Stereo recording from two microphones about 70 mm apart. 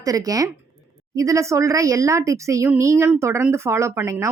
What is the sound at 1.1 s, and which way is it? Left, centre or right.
Speech, right.